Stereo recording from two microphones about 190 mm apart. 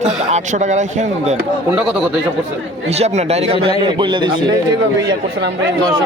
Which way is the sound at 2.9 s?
35° right (ahead or behind).